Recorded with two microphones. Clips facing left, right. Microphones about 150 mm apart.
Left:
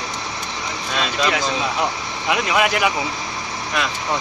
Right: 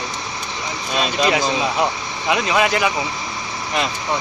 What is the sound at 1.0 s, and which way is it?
Speech, 20° right (ahead or behind).